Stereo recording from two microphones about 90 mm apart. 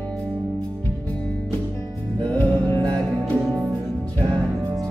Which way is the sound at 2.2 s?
15° left (ahead or behind).